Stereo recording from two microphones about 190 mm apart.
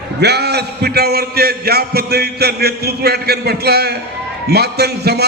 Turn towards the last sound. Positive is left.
turn(degrees=-60)  # may be behind; listen again after turning